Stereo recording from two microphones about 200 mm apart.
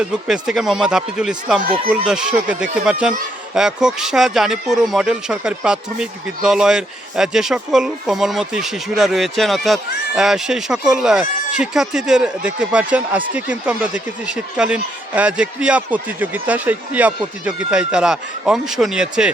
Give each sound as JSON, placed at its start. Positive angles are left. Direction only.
{"t": 0.0, "sound": "speech", "side_deg": -5}